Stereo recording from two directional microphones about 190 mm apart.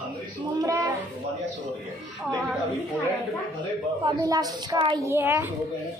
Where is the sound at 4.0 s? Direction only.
20° right (ahead or behind).